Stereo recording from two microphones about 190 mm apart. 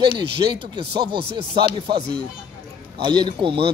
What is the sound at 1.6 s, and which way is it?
Speech, 25° right (ahead or behind).